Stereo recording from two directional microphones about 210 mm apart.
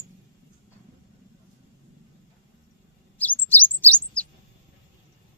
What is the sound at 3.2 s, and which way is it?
Chirp, 10° left (ahead or behind).